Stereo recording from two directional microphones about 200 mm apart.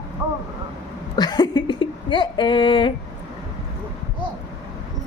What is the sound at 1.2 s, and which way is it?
Speech, 20° left (ahead or behind).